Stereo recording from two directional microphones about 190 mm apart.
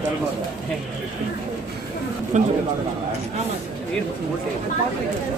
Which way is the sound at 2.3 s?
40° right (ahead or behind).